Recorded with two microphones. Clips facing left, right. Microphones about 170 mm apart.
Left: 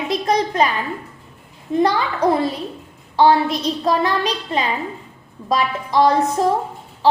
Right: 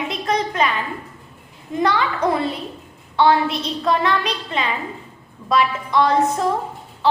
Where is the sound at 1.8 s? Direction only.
35° left (ahead or behind).